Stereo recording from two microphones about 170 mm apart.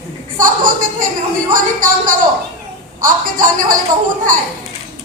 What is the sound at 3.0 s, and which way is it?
Speech, 55° right (ahead or behind).